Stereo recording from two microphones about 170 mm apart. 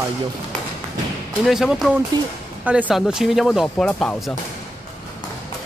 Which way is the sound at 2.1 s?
25° right (ahead or behind).